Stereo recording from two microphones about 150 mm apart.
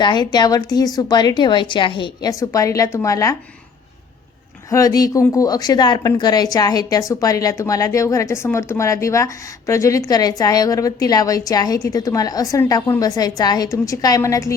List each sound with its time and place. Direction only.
0.0 s a woman's voice: 30° left (ahead or behind)
4.7 s a woman's voice: 25° left (ahead or behind)